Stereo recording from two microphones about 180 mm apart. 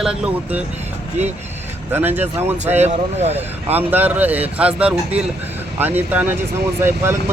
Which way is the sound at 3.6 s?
10° right (ahead or behind).